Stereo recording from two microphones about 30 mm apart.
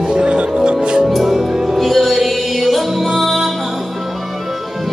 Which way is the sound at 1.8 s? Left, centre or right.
Centre.